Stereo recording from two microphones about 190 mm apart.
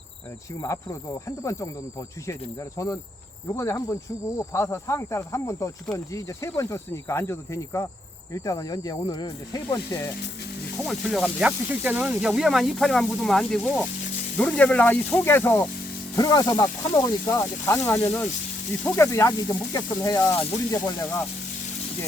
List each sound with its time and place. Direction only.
0.6 s speech: 15° left (ahead or behind)
10.8 s speech: centre (ahead or behind)